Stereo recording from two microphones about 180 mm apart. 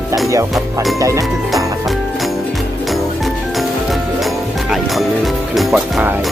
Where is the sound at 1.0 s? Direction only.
20° right (ahead or behind).